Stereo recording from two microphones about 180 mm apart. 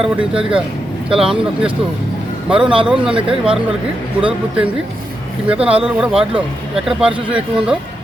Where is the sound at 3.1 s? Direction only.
30° right (ahead or behind).